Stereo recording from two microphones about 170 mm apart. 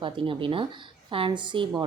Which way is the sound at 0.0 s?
30° right (ahead or behind).